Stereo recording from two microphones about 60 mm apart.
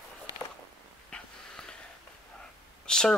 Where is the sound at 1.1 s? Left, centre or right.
Centre.